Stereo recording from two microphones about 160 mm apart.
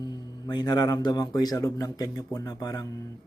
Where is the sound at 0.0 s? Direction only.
25° left (ahead or behind).